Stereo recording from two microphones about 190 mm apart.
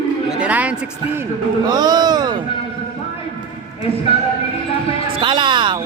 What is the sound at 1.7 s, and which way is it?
Music, 20° right (ahead or behind).